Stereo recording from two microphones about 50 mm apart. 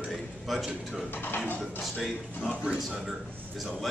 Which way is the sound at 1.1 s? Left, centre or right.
Left.